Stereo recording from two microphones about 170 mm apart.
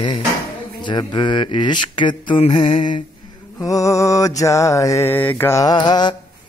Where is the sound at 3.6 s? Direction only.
20° left (ahead or behind).